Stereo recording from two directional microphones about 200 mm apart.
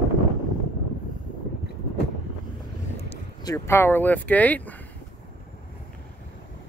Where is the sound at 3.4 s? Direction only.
15° left (ahead or behind).